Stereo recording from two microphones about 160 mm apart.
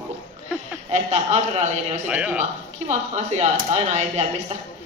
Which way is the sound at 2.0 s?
5° right (ahead or behind).